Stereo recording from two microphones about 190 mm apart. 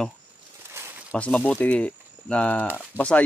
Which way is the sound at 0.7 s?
15° right (ahead or behind).